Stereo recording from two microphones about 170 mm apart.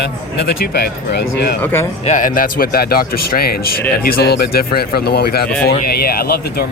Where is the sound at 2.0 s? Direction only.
50° left (ahead or behind).